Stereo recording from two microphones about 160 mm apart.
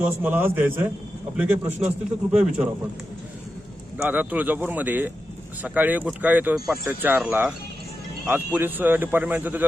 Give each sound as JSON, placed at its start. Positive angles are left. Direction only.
{"t": 0.0, "sound": "speech", "side_deg": -10}
{"t": 3.9, "sound": "speech", "side_deg": -10}
{"t": 8.5, "sound": "speech", "side_deg": -10}